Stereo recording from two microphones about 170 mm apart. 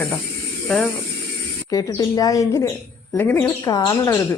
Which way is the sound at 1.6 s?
20° left (ahead or behind).